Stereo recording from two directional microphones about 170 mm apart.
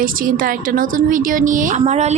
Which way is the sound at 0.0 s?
55° right (ahead or behind).